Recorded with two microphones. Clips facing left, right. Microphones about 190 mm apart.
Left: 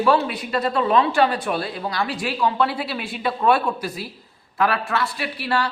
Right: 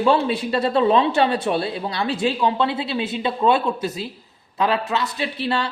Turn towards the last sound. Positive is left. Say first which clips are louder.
# right 1 dB
turn(degrees=-25)  # may be behind; listen again after turning